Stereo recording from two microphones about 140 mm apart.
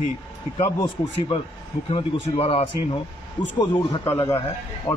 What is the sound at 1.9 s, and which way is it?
Speech, 45° left (ahead or behind).